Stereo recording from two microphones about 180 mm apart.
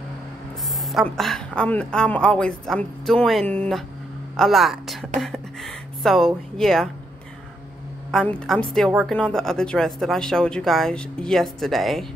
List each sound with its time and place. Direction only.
0.8 s speech: centre (ahead or behind)
8.1 s speech: 5° left (ahead or behind)